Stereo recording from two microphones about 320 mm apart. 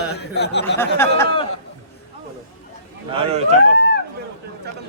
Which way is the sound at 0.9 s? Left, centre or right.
Centre.